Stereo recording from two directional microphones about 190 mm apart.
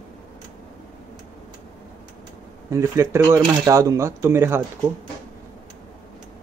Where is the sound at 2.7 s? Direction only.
15° right (ahead or behind).